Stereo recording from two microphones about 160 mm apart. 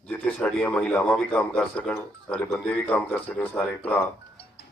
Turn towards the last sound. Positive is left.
turn(degrees=10)  # may be behind; listen again after turning